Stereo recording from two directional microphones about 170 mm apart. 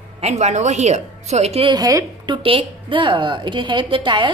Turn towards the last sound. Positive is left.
turn(degrees=-30)  # may be behind; listen again after turning